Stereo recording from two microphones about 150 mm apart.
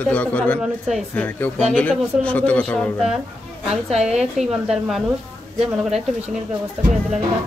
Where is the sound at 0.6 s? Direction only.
Centre (ahead or behind).